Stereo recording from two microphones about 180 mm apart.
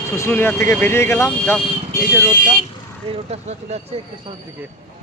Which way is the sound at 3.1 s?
35° right (ahead or behind).